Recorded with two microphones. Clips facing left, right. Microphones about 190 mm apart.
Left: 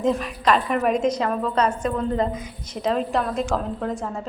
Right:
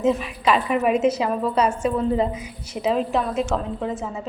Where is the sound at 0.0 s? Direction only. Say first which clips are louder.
Right 1 dB; 5° right (ahead or behind).